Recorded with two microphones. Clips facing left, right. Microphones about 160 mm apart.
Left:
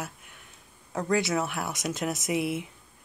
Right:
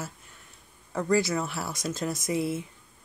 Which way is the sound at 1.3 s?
10° left (ahead or behind).